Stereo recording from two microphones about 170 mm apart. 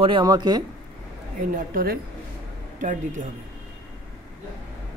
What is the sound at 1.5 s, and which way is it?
A woman's voice, 60° right (ahead or behind).